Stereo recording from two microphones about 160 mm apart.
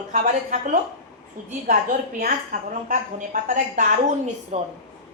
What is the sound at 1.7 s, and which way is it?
A woman's voice, 65° right (ahead or behind).